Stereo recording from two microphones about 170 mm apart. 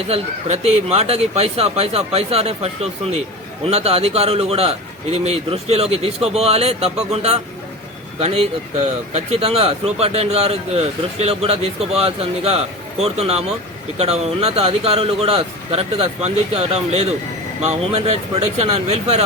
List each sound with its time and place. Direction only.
0.1 s speech: 40° right (ahead or behind)